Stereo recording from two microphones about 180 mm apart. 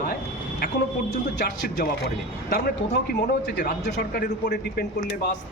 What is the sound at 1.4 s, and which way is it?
Speech, 70° left (ahead or behind).